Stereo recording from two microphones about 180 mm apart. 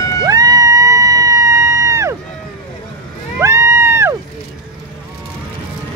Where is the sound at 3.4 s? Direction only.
15° right (ahead or behind).